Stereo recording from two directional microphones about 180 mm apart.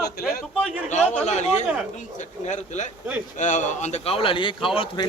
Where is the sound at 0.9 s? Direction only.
40° left (ahead or behind).